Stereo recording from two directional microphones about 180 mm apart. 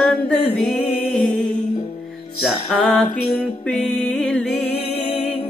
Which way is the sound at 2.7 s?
5° left (ahead or behind).